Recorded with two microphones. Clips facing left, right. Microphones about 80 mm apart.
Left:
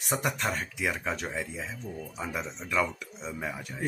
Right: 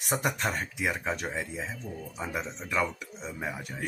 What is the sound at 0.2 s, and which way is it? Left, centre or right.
Speech, centre.